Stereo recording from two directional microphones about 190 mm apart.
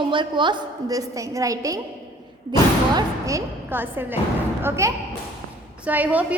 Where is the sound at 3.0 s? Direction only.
15° right (ahead or behind).